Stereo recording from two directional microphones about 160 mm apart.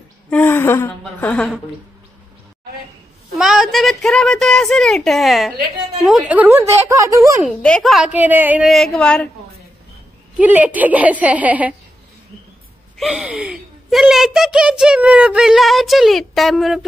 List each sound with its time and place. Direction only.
0.3 s a woman's voice: 10° left (ahead or behind)
3.3 s speech: centre (ahead or behind); by 7.4 s 20° right (ahead or behind)
7.4 s speech: 5° left (ahead or behind)
8.6 s speech: 5° left (ahead or behind)
10.3 s speech: 10° right (ahead or behind)
12.9 s speech: centre (ahead or behind)